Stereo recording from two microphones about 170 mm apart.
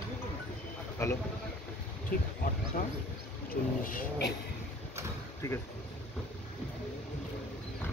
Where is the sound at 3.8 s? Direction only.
55° left (ahead or behind).